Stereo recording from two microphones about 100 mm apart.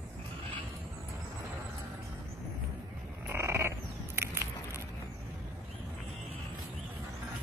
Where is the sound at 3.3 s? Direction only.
25° right (ahead or behind).